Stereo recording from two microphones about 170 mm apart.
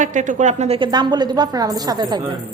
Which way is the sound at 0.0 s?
45° right (ahead or behind).